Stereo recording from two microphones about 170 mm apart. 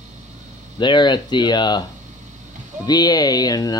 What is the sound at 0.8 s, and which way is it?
Speech, 25° left (ahead or behind).